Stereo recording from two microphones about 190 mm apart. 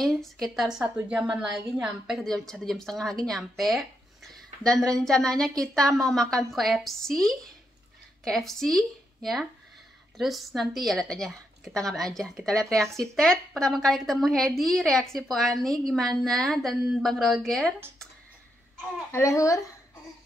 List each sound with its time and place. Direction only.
0.0 s a woman's voice: centre (ahead or behind)
19.1 s speech: 15° left (ahead or behind)